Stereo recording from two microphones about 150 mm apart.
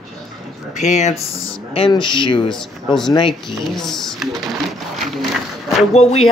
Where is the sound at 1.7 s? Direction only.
35° left (ahead or behind).